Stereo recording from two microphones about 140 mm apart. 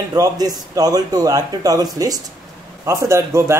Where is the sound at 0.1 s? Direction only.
25° right (ahead or behind).